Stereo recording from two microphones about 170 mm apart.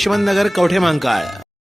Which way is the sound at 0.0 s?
Centre (ahead or behind).